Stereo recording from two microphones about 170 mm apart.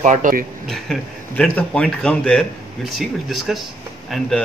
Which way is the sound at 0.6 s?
5° left (ahead or behind).